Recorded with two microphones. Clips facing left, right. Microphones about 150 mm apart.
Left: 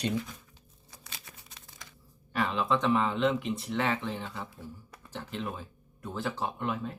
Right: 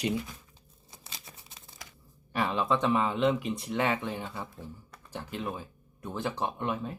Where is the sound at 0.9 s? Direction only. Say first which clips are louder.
Right 1 dB; 25° right (ahead or behind).